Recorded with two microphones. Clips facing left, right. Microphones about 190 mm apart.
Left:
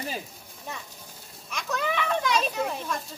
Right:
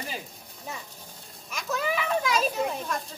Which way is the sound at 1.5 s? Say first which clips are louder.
Even; centre (ahead or behind).